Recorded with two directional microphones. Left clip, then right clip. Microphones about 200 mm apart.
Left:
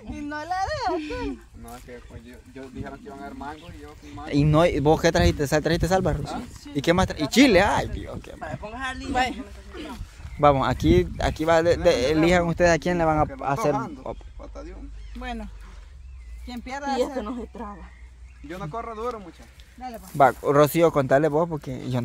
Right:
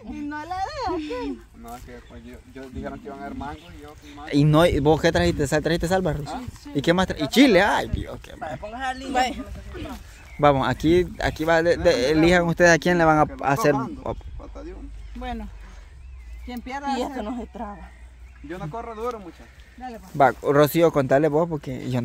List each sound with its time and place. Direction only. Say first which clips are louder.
0.1 s a sound: left 1 dB; 35° left (ahead or behind)
1.6 s speech: right 2 dB; 20° right (ahead or behind)
9.1 s a woman's voice: right 1 dB; 40° right (ahead or behind)
9.7 s speech: right 1 dB; 15° left (ahead or behind)
10.4 s speech: even; 5° right (ahead or behind); by 14.2 s 25° right (ahead or behind)
14.4 s music: even; 15° left (ahead or behind)
16.4 s speech: right 1 dB; 20° left (ahead or behind)
17.2 s a woman's voice: right 1 dB; 35° right (ahead or behind)
18.5 s speech: even; 10° left (ahead or behind)
20.2 s speech: even; 5° right (ahead or behind)